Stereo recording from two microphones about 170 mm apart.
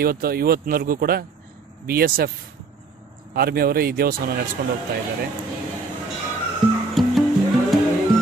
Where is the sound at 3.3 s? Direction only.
65° right (ahead or behind).